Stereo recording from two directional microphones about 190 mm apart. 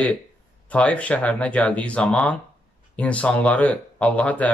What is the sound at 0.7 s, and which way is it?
Speech, 5° left (ahead or behind).